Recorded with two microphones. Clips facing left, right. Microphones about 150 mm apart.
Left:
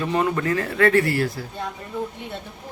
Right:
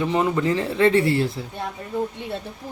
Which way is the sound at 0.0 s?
20° right (ahead or behind).